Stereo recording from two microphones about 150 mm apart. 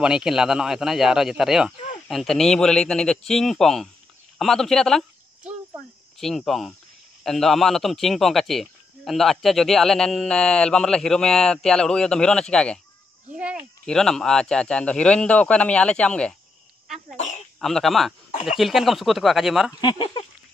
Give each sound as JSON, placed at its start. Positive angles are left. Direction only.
{"t": 0.0, "sound": "speech", "side_deg": -5}
{"t": 6.1, "sound": "speech", "side_deg": 0}
{"t": 13.4, "sound": "a sound", "side_deg": -5}
{"t": 13.8, "sound": "a man's voice", "side_deg": 5}
{"t": 17.2, "sound": "speech", "side_deg": 55}
{"t": 17.6, "sound": "speech", "side_deg": 0}
{"t": 19.8, "sound": "speech", "side_deg": 30}